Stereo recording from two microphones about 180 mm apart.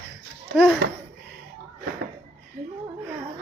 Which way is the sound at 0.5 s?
5° left (ahead or behind).